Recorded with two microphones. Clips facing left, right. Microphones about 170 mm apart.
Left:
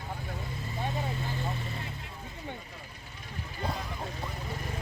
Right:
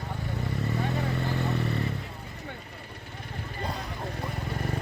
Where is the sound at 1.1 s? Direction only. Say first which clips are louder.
Right 6 dB; 70° right (ahead or behind).